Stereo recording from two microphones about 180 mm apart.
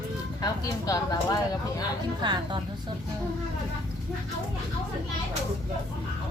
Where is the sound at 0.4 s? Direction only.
20° left (ahead or behind).